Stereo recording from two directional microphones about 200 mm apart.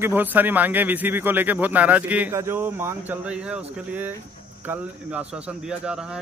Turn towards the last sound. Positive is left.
turn(degrees=-5)  # may be behind; listen again after turning